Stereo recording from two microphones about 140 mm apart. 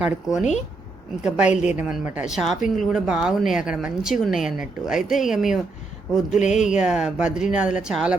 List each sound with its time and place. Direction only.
0.3 s a woman's voice: 5° right (ahead or behind)
6.4 s speech: 55° left (ahead or behind)
6.7 s speech: 5° right (ahead or behind)